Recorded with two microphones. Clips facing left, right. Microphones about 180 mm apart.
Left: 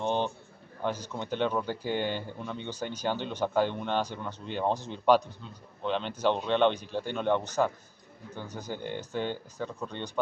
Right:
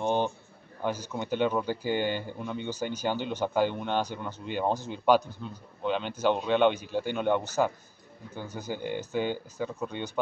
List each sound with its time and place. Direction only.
0.0 s a man's voice: 10° right (ahead or behind)
5.4 s speech: 60° right (ahead or behind)
5.8 s speech: 5° right (ahead or behind)